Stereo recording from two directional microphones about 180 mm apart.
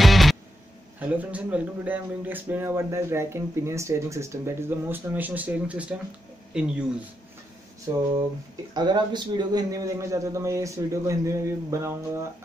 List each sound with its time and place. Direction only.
0.0 s music: centre (ahead or behind)
0.9 s speech: 10° right (ahead or behind)
8.7 s speech: 25° right (ahead or behind)